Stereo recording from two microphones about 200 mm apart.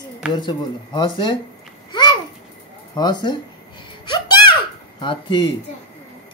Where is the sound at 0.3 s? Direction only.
20° left (ahead or behind).